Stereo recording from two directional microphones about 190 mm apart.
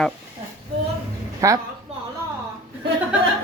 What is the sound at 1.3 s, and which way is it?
Speech, 20° right (ahead or behind).